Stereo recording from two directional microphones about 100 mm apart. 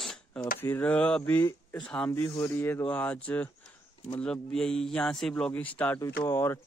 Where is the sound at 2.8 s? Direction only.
15° left (ahead or behind).